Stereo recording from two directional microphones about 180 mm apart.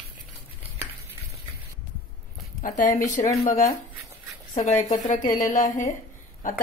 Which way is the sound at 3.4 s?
50° left (ahead or behind).